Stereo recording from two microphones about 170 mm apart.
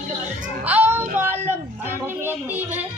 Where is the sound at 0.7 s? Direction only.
10° right (ahead or behind).